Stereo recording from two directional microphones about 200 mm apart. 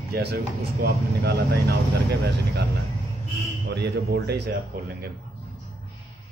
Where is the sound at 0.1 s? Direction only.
50° right (ahead or behind).